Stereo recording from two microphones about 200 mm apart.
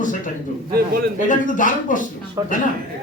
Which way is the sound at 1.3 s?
40° left (ahead or behind).